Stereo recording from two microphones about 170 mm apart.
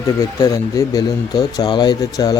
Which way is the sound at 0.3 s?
20° left (ahead or behind).